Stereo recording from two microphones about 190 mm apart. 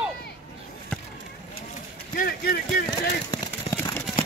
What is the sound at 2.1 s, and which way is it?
Speech, 50° left (ahead or behind).